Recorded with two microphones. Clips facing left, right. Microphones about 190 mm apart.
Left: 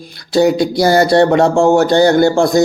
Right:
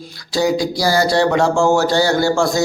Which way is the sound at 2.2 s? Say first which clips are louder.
Left 5 dB; 20° left (ahead or behind).